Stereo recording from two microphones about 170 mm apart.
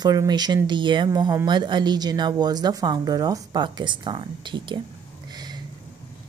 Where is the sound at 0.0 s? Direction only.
25° right (ahead or behind).